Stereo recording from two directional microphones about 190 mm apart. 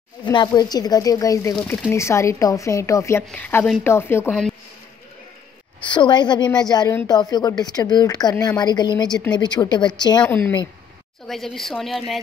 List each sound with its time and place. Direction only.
0.2 s speech: 25° left (ahead or behind)
4.3 s speech: 5° left (ahead or behind)
5.9 s speech: 25° left (ahead or behind)
10.2 s a woman's voice: 10° left (ahead or behind)